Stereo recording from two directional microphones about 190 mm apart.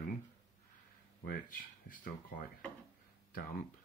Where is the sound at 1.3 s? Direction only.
45° left (ahead or behind).